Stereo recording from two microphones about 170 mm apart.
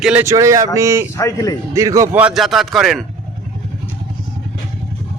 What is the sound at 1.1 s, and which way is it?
Speech, 20° left (ahead or behind).